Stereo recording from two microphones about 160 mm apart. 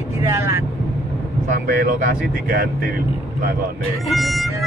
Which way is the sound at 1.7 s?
60° right (ahead or behind).